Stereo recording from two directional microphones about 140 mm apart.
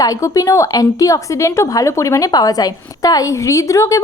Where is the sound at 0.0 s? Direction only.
25° left (ahead or behind).